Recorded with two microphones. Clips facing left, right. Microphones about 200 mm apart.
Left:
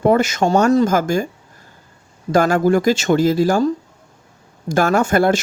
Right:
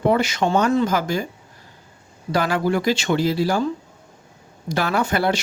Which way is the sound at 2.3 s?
45° left (ahead or behind).